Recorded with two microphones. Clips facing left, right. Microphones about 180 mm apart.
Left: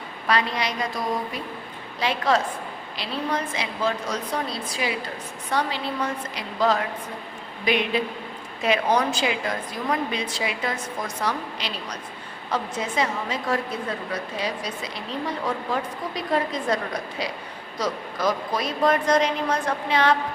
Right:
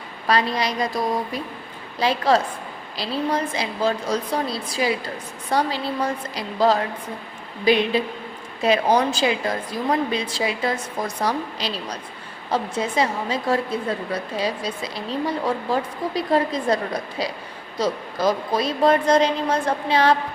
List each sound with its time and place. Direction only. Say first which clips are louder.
0.3 s a woman's voice: right 3 dB; 35° right (ahead or behind)
2.0 s a woman's voice: right 3 dB; 35° right (ahead or behind)